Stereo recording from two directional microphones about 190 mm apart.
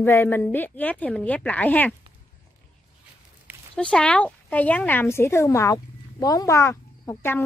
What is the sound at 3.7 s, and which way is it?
Speech, 5° left (ahead or behind).